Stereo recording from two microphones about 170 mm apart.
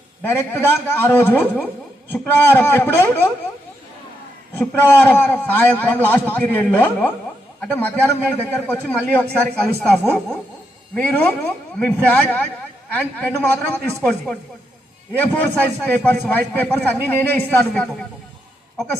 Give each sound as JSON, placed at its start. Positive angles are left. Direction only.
{"t": 0.2, "sound": "a man's voice", "side_deg": 10}
{"t": 4.5, "sound": "a man's voice", "side_deg": 10}